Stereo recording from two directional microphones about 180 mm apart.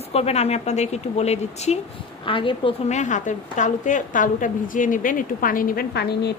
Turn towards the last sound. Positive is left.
turn(degrees=65)  # may be behind; listen again after turning